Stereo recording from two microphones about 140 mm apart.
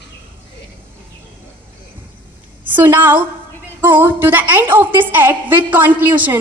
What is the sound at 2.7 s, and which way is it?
A woman's voice, 15° right (ahead or behind).